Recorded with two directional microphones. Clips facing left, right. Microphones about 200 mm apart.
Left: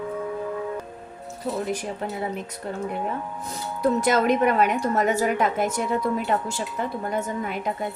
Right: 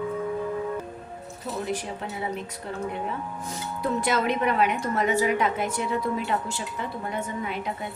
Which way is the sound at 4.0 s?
45° left (ahead or behind).